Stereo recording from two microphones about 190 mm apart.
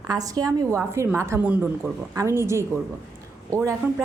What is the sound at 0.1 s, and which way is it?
A woman's voice, 20° right (ahead or behind).